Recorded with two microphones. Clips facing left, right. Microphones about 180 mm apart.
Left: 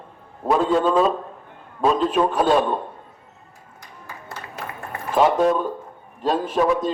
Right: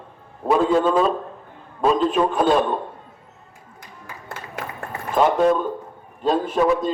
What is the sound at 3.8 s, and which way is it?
Music, 55° right (ahead or behind).